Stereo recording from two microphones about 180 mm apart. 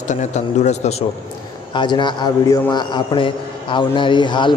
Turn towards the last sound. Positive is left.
turn(degrees=25)  # may be behind; listen again after turning